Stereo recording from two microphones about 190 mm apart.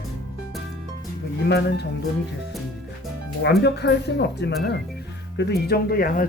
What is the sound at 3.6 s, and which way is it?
Speech, 65° left (ahead or behind).